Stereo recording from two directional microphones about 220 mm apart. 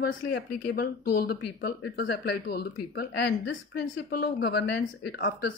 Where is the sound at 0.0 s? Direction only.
45° left (ahead or behind).